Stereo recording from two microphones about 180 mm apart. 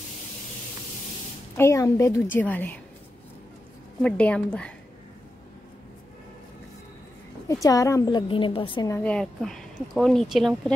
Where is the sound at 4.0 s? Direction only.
5° left (ahead or behind).